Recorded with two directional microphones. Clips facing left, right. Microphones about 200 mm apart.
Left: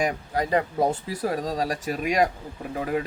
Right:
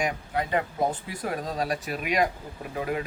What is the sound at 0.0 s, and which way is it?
Speech, 35° left (ahead or behind).